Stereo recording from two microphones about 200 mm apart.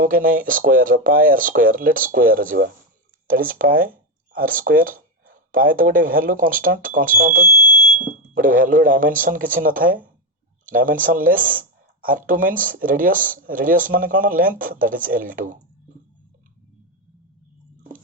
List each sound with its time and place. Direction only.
0.0 s speech: 45° right (ahead or behind)